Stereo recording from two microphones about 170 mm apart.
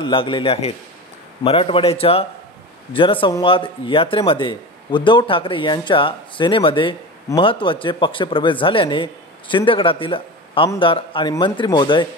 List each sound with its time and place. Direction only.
0.0 s a man's voice: 30° left (ahead or behind)